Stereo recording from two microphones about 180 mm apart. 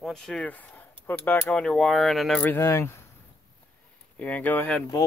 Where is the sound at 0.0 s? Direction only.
5° left (ahead or behind).